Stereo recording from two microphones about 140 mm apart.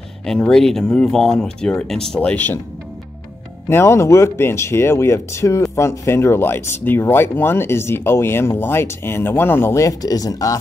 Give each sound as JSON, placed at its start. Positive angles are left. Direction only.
{"t": 0.2, "sound": "speech", "side_deg": 5}
{"t": 3.6, "sound": "speech", "side_deg": 20}